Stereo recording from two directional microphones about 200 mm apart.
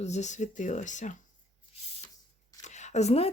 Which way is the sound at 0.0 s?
35° left (ahead or behind).